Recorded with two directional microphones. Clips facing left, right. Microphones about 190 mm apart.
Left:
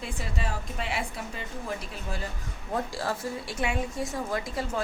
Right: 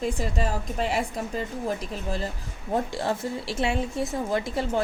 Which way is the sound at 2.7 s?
25° right (ahead or behind).